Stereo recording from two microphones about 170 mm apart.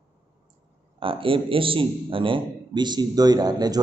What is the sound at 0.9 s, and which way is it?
A man's voice, 30° right (ahead or behind).